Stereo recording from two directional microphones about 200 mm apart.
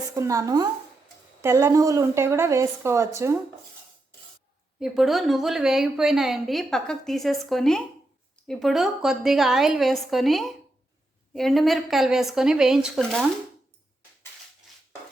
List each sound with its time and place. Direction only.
0.1 s a woman's voice: 15° right (ahead or behind)
4.8 s a woman's voice: centre (ahead or behind)